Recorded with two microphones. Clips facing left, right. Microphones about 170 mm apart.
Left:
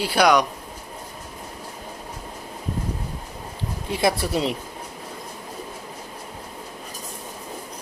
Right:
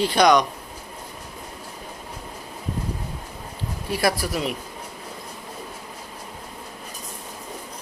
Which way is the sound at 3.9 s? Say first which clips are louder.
Left 1 dB; 20° left (ahead or behind).